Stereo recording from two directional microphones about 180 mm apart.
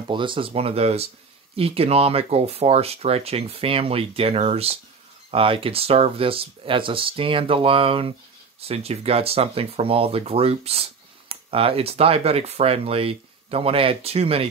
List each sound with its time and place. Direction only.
0.1 s speech: 30° right (ahead or behind)